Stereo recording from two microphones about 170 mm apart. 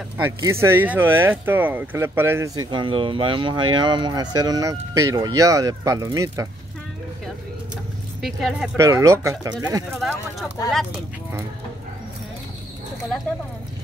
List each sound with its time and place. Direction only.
0.2 s speech: 15° right (ahead or behind)
8.2 s speech: centre (ahead or behind)
8.7 s speech: 15° right (ahead or behind)